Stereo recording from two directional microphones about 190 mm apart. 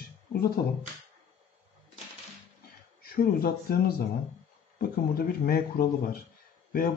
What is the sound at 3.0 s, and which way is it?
Speech, 50° left (ahead or behind).